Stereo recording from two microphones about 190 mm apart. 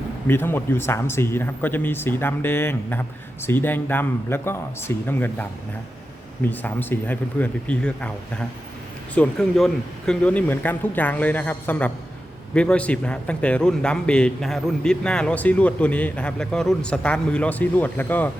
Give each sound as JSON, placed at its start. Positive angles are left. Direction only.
{"t": 0.3, "sound": "a man's voice", "side_deg": 10}